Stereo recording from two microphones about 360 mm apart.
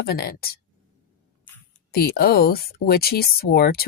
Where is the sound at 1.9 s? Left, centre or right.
Left.